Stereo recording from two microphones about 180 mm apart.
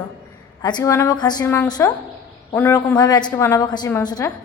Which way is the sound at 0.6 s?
20° left (ahead or behind).